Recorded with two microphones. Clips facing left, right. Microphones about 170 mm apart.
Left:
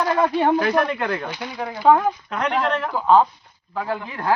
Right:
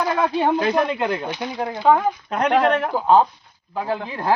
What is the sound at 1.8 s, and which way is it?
Speech, centre (ahead or behind).